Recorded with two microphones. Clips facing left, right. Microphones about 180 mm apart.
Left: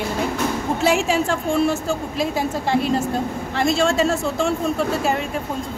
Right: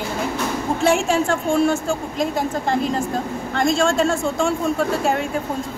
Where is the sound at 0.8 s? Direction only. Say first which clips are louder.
Right 1 dB; centre (ahead or behind).